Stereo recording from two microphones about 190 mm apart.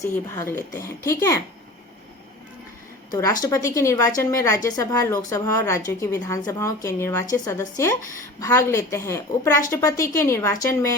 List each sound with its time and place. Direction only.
0.0 s a woman's voice: 15° left (ahead or behind)
3.1 s a woman's voice: 20° left (ahead or behind)